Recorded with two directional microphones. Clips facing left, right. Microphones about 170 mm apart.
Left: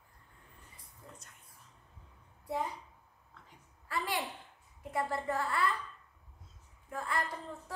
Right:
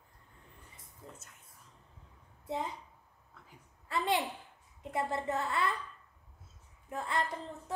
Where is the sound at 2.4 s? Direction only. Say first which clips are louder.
Left 1 dB; 25° right (ahead or behind).